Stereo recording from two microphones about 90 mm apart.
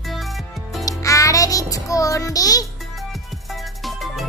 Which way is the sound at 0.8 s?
35° left (ahead or behind).